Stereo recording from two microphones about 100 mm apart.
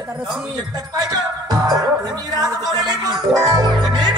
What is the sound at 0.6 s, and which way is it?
Music, 40° right (ahead or behind).